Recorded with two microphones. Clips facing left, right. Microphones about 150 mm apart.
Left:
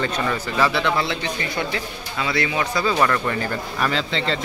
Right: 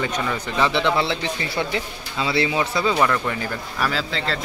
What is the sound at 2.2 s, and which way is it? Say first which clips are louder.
Speech: right 2 dB; 25° right (ahead or behind).